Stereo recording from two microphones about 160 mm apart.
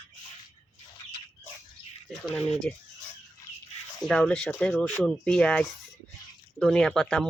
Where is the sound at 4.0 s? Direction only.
5° left (ahead or behind).